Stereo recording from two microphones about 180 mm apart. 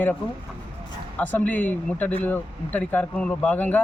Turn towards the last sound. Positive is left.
turn(degrees=10)  # may be behind; listen again after turning